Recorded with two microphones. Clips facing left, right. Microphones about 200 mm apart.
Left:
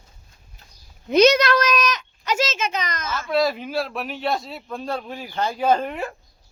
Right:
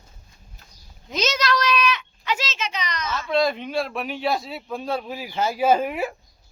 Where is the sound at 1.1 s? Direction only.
60° left (ahead or behind).